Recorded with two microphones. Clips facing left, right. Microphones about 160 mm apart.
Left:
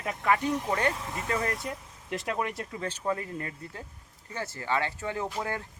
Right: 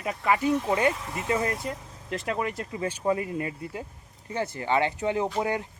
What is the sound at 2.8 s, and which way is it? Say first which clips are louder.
Speech: right 5 dB; 10° right (ahead or behind).